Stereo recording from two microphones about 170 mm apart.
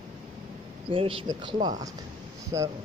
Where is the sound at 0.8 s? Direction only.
30° right (ahead or behind).